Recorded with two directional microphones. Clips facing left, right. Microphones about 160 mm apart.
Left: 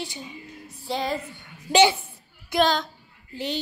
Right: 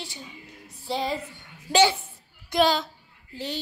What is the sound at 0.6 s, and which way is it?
Music, centre (ahead or behind).